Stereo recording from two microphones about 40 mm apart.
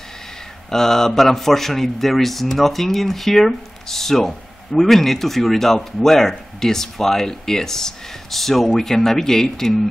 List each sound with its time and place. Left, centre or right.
0.7 s speech: centre